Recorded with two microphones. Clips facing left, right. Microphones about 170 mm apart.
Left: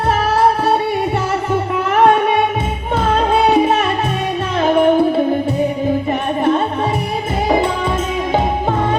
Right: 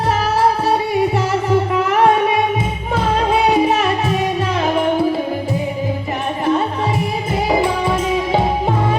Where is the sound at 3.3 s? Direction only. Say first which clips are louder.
Left 1 dB; 25° left (ahead or behind).